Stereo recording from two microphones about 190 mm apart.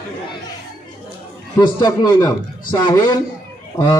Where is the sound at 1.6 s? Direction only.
20° left (ahead or behind).